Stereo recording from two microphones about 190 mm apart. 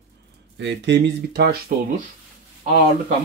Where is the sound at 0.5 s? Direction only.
65° right (ahead or behind).